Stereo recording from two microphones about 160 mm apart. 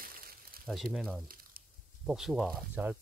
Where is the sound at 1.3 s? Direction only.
65° right (ahead or behind).